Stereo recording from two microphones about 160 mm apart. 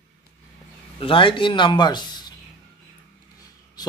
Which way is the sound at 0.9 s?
35° left (ahead or behind).